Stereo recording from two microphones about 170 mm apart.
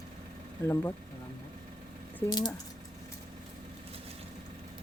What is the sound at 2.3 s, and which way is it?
Speech, 25° left (ahead or behind).